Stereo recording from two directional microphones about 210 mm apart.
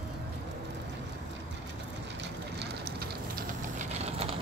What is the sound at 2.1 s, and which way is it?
Vehicle, 50° right (ahead or behind).